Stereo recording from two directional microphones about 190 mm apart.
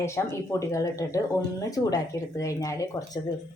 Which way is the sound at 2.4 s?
15° left (ahead or behind).